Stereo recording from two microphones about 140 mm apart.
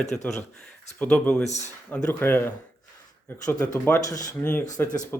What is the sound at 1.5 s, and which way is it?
Speech, 55° left (ahead or behind).